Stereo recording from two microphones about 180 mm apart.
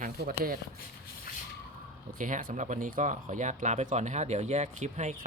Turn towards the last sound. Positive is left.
turn(degrees=-40)  # may be behind; listen again after turning